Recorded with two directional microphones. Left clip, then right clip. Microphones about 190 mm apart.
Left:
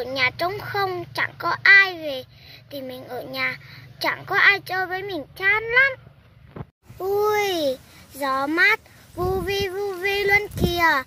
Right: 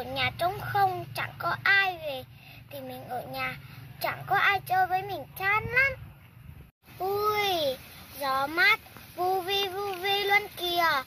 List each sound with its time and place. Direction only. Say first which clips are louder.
0.1 s a child's voice: left 5 dB; 35° left (ahead or behind)
7.1 s a child's voice: left 6 dB; 40° left (ahead or behind)